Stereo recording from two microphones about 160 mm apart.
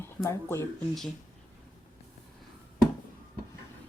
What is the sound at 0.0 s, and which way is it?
Speech, 15° left (ahead or behind).